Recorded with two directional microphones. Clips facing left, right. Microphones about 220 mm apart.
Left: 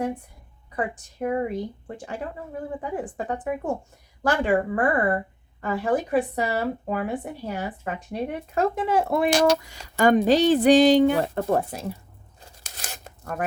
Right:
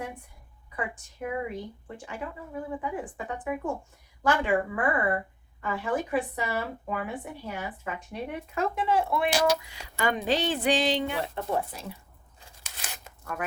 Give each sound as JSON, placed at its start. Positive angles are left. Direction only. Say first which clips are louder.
{"t": 0.8, "sound": "a woman's voice", "louder": "left 6 dB", "side_deg": 40}
{"t": 12.4, "sound": "tearing", "louder": "left 3 dB", "side_deg": 40}